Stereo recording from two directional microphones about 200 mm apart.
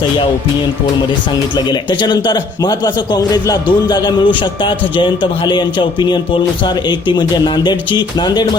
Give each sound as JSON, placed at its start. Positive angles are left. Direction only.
{"t": 1.5, "sound": "a man's voice", "side_deg": 20}